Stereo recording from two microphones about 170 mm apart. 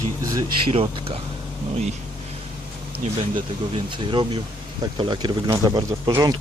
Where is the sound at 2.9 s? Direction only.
30° right (ahead or behind).